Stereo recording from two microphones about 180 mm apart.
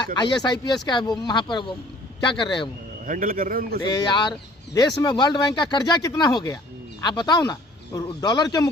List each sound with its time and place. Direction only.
0.0 s speech: 25° left (ahead or behind)
3.1 s a man's voice: 50° right (ahead or behind)
3.9 s speech: 25° left (ahead or behind)